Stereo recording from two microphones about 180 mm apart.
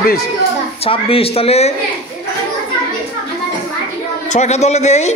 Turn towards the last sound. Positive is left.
turn(degrees=40)  # may be behind; listen again after turning